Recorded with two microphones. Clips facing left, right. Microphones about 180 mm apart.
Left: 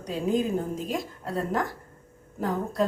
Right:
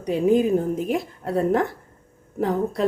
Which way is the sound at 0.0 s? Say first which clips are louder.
Right 7 dB; 65° right (ahead or behind).